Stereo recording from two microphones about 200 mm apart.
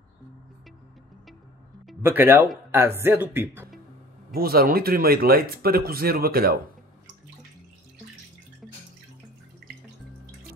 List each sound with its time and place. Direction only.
2.0 s speech: 10° right (ahead or behind)
4.3 s speech: 50° right (ahead or behind)